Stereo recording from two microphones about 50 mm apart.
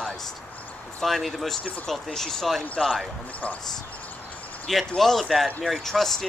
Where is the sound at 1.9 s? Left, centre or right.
Centre.